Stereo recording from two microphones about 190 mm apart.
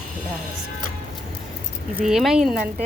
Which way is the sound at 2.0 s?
5° right (ahead or behind).